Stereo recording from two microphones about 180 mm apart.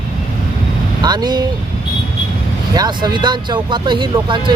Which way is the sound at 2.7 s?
25° right (ahead or behind).